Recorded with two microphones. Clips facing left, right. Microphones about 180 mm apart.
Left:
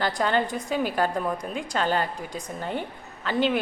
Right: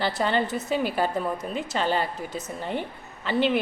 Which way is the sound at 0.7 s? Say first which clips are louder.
Even; 45° left (ahead or behind).